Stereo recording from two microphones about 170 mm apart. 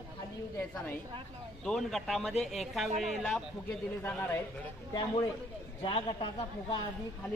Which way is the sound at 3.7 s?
10° left (ahead or behind).